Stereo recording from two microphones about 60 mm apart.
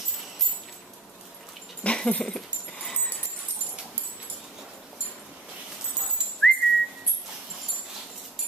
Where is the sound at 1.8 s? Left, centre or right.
Centre.